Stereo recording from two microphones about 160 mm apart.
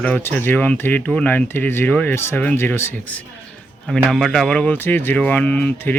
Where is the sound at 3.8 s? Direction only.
Centre (ahead or behind).